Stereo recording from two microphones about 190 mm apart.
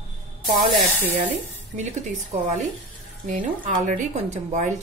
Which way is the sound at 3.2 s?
45° right (ahead or behind).